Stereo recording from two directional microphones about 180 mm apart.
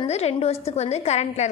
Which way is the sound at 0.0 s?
35° left (ahead or behind).